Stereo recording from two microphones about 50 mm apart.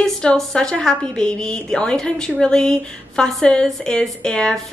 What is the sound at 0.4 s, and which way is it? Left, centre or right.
A woman's voice, centre.